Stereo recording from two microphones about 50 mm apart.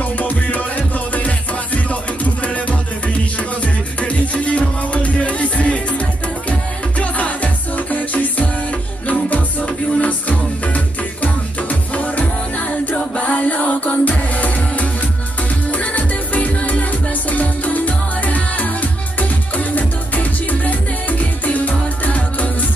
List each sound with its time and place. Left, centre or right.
0.2 s music: left
11.9 s music: left